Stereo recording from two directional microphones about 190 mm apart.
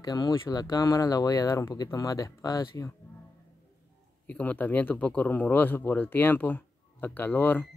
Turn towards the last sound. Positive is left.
turn(degrees=10)  # may be behind; listen again after turning